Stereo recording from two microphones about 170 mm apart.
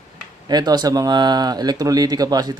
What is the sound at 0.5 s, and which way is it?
Speech, 25° right (ahead or behind).